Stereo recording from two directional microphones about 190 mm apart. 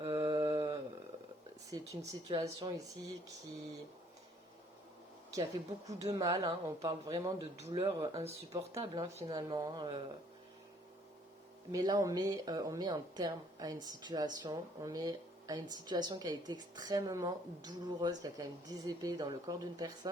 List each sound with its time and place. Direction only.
0.1 s mantra: 20° right (ahead or behind)
2.2 s a woman's voice: 20° right (ahead or behind)
5.3 s speech: 20° right (ahead or behind)
7.5 s speech: 35° right (ahead or behind)
7.8 s a woman's voice: 15° right (ahead or behind)
11.7 s a woman's voice: 20° right (ahead or behind)